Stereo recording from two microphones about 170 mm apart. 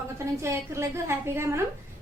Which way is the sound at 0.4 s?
15° right (ahead or behind).